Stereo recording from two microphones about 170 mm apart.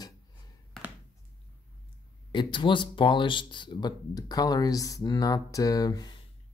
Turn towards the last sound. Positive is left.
turn(degrees=20)  # may be behind; listen again after turning